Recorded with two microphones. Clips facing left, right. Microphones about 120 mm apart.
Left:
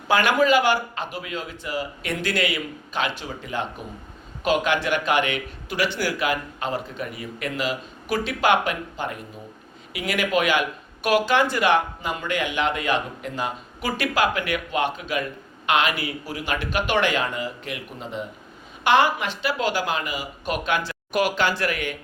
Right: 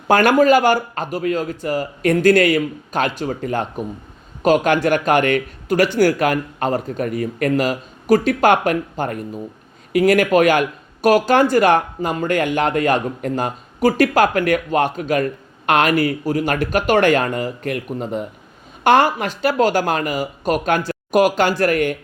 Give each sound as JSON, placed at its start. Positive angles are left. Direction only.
{"t": 0.1, "sound": "speech", "side_deg": -45}